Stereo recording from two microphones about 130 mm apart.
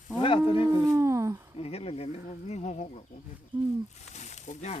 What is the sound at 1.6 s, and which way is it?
Speech, 50° left (ahead or behind).